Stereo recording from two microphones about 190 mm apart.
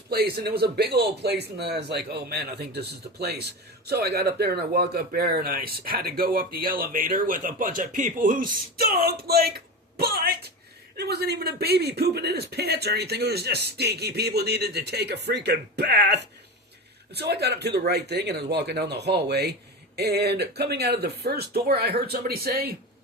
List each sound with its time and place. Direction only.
0.1 s a man's voice: 55° right (ahead or behind)